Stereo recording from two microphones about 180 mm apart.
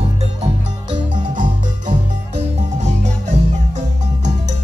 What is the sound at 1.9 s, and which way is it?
Music, 40° right (ahead or behind).